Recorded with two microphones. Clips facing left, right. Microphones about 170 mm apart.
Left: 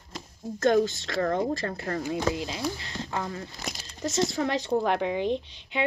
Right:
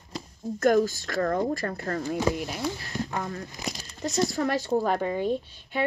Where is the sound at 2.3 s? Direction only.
20° left (ahead or behind).